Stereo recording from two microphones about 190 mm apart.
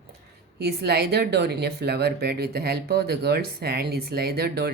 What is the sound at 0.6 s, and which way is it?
Speech, 60° right (ahead or behind).